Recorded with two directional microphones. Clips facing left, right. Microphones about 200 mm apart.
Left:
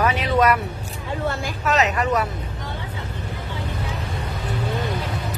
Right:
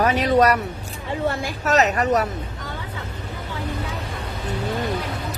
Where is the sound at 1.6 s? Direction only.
40° right (ahead or behind).